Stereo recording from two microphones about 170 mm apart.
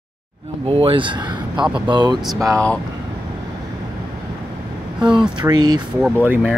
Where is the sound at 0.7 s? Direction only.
35° right (ahead or behind).